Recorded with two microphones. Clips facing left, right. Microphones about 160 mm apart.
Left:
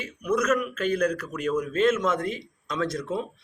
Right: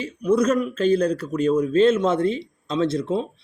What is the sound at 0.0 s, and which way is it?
Speech, 30° right (ahead or behind).